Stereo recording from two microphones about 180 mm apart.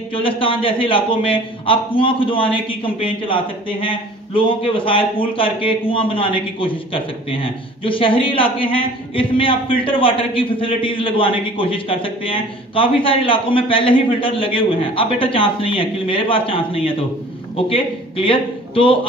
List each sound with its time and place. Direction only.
0.1 s a man's voice: 30° left (ahead or behind)